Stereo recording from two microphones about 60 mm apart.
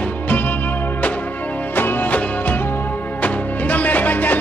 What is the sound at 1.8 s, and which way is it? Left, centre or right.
Music, left.